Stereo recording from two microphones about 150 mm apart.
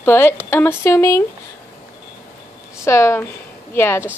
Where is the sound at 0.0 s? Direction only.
15° left (ahead or behind).